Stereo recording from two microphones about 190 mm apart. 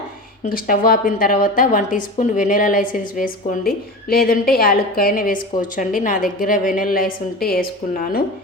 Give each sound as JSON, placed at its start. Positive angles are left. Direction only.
{"t": 0.4, "sound": "a woman's voice", "side_deg": 50}